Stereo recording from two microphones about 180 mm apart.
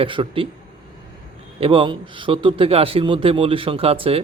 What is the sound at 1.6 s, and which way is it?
A man's voice, 30° right (ahead or behind).